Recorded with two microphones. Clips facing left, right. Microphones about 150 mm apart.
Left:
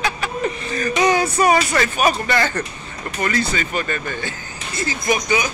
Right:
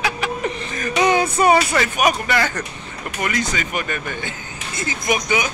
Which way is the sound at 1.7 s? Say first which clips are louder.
Even; 10° right (ahead or behind).